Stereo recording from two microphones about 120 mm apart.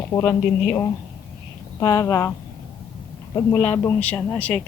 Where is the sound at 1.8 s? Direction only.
30° left (ahead or behind).